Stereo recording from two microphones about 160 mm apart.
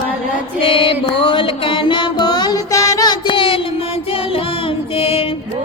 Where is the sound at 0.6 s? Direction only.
35° left (ahead or behind).